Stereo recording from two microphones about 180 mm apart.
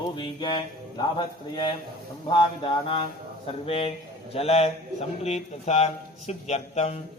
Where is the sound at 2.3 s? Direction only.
30° left (ahead or behind).